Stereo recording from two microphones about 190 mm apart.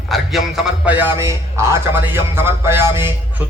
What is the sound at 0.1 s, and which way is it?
A man's voice, centre (ahead or behind).